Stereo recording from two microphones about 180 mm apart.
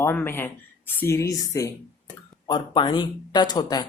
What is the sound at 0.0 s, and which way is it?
Speech, 10° left (ahead or behind).